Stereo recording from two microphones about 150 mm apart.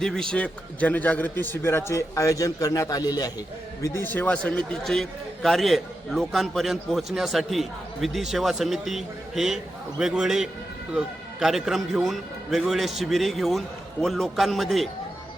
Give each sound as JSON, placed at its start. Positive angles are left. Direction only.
{"t": 0.0, "sound": "a man's voice", "side_deg": 5}